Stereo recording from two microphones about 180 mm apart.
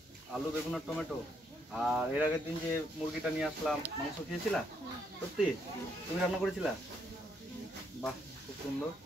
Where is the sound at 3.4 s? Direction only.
Centre (ahead or behind).